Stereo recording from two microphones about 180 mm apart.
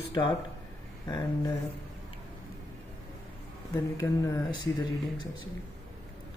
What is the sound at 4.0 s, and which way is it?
Speech, 15° left (ahead or behind).